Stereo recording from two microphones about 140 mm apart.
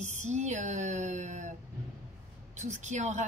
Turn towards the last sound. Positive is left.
turn(degrees=-55)  # may be behind; listen again after turning